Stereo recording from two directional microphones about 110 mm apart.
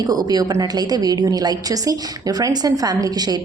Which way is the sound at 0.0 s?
35° right (ahead or behind).